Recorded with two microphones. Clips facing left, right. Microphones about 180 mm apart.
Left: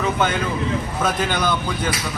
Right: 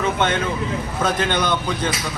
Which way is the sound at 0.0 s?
5° left (ahead or behind).